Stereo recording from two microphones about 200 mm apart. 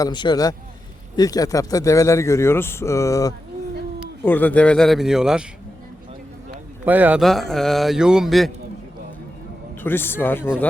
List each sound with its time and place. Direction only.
0.0 s a man's voice: 20° left (ahead or behind); by 5.5 s 5° right (ahead or behind)
6.8 s speech: 10° right (ahead or behind)
9.8 s a man's voice: 10° left (ahead or behind)